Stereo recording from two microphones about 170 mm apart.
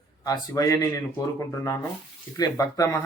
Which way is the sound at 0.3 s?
20° left (ahead or behind).